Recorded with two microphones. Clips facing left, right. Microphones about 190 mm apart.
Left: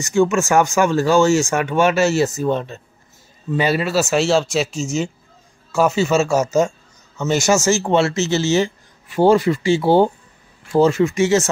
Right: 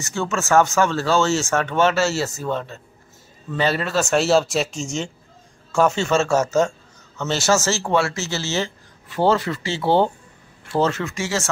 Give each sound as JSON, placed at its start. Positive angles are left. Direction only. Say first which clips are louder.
{"t": 0.0, "sound": "speech", "louder": "left 9 dB", "side_deg": 15}